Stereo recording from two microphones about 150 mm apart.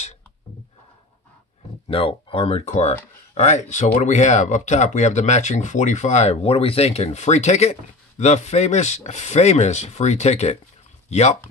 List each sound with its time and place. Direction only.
1.9 s speech: 40° left (ahead or behind)